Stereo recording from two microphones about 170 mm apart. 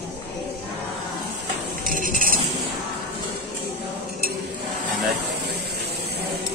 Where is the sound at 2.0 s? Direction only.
55° right (ahead or behind).